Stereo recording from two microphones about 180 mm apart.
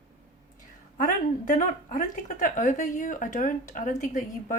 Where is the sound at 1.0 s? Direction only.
45° left (ahead or behind).